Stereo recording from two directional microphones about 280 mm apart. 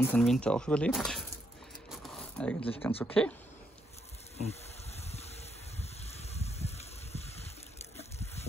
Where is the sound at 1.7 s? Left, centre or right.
Centre.